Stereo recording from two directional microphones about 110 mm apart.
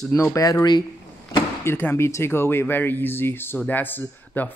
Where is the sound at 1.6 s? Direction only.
20° left (ahead or behind).